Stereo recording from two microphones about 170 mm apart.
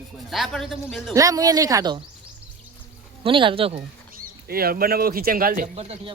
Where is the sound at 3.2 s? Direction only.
30° right (ahead or behind).